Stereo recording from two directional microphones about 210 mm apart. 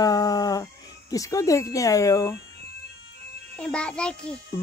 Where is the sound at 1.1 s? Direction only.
15° left (ahead or behind).